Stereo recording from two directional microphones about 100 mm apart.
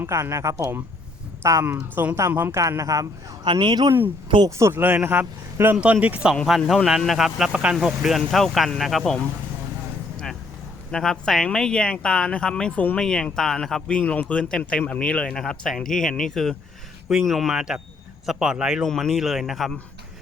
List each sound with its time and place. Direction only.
0.0 s a man's voice: 30° right (ahead or behind)
1.6 s a man's voice: 20° right (ahead or behind)
2.6 s speech: 30° right (ahead or behind)
3.4 s speech: 50° right (ahead or behind)
4.4 s a man's voice: 30° right (ahead or behind)
4.8 s a man's voice: 20° right (ahead or behind)
6.3 s speech: 5° left (ahead or behind)
10.9 s speech: 5° left (ahead or behind)